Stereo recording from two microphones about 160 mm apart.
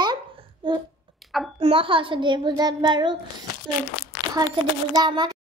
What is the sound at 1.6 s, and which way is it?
A child's voice, 35° right (ahead or behind).